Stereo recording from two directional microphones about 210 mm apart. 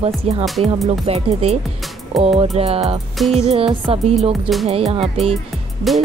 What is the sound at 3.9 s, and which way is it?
Music, 25° right (ahead or behind).